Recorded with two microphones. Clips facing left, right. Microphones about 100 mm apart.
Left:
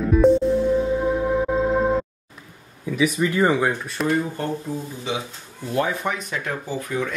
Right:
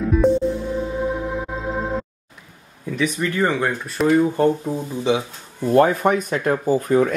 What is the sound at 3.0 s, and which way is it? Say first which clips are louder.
Speech: left 1 dB; 15° left (ahead or behind).